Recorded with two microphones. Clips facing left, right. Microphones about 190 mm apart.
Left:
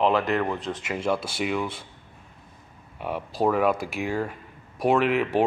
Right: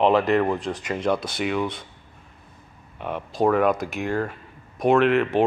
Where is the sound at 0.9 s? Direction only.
5° left (ahead or behind).